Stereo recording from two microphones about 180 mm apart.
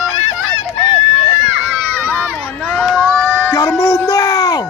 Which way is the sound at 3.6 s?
20° left (ahead or behind).